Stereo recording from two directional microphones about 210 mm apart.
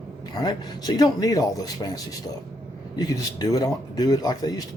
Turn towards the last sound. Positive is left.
turn(degrees=20)  # may be behind; listen again after turning